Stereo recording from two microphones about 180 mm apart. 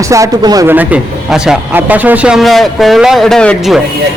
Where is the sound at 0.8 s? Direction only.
5° right (ahead or behind).